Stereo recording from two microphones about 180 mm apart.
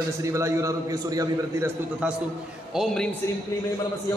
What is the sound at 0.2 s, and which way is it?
A man's voice, 15° right (ahead or behind).